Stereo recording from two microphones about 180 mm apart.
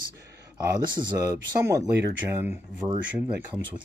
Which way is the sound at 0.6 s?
20° right (ahead or behind).